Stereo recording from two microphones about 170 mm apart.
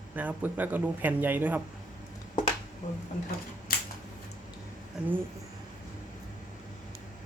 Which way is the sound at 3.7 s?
60° left (ahead or behind).